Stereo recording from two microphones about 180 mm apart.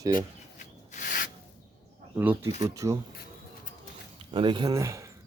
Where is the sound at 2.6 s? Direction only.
15° right (ahead or behind).